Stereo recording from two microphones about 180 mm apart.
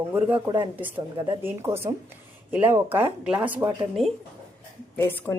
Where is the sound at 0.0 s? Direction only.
10° right (ahead or behind).